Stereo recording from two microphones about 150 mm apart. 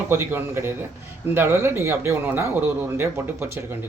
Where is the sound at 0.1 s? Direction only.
15° right (ahead or behind).